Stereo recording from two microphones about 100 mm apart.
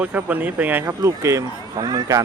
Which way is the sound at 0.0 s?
15° right (ahead or behind).